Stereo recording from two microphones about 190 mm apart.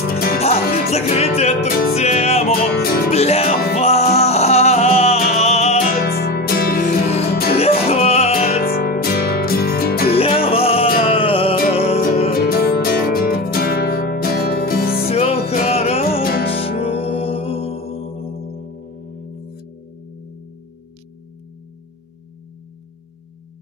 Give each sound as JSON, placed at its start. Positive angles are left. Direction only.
{"t": 0.1, "sound": "music", "side_deg": 55}
{"t": 0.4, "sound": "music", "side_deg": 35}
{"t": 2.5, "sound": "music", "side_deg": 50}
{"t": 3.1, "sound": "music", "side_deg": 35}
{"t": 5.9, "sound": "music", "side_deg": 55}
{"t": 7.5, "sound": "music", "side_deg": 30}
{"t": 8.6, "sound": "music", "side_deg": 55}
{"t": 10.1, "sound": "music", "side_deg": 30}
{"t": 12.3, "sound": "music", "side_deg": 55}
{"t": 15.0, "sound": "music", "side_deg": 30}
{"t": 16.2, "sound": "music", "side_deg": 50}
{"t": 16.4, "sound": "music", "side_deg": 30}